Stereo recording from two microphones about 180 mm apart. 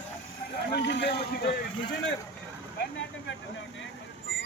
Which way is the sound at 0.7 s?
70° left (ahead or behind).